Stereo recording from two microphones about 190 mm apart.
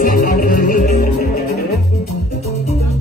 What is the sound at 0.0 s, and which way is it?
Music, 50° left (ahead or behind).